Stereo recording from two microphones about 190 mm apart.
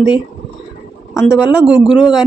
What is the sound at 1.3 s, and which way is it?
Speech, 5° right (ahead or behind).